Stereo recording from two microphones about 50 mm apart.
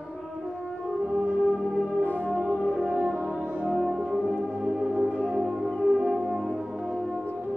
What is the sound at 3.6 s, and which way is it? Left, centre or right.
Music, centre.